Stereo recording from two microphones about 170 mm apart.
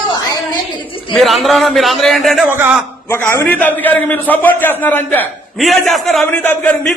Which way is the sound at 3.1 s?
15° left (ahead or behind).